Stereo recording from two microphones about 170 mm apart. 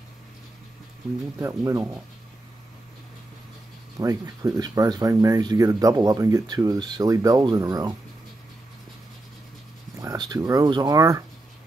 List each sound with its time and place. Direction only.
1.4 s speech: 20° right (ahead or behind)
4.0 s speech: 20° right (ahead or behind)
9.9 s speech: 20° right (ahead or behind)